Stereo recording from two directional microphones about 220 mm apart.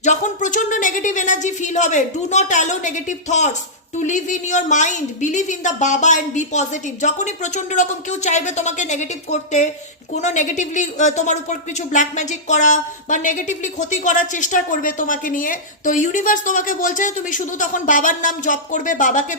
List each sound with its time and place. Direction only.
0.0 s speech: 35° left (ahead or behind)